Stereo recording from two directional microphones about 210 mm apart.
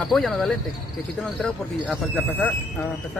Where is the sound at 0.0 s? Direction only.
Centre (ahead or behind).